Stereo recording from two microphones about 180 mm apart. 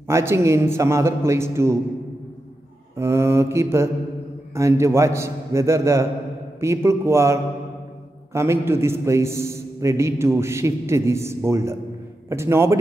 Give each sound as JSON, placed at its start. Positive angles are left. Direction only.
{"t": 0.1, "sound": "a man's voice", "side_deg": -15}
{"t": 3.0, "sound": "a man's voice", "side_deg": -15}